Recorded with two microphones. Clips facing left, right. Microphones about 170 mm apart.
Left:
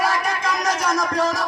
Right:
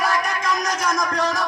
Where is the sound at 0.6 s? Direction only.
30° left (ahead or behind).